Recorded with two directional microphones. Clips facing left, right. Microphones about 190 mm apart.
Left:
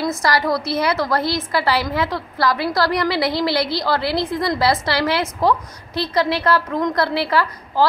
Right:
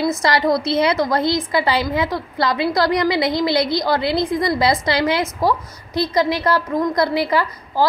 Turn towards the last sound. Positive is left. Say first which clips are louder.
# even
turn(degrees=-15)  # may be behind; listen again after turning